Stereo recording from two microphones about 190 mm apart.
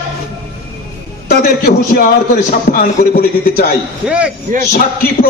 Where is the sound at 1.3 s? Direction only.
55° left (ahead or behind).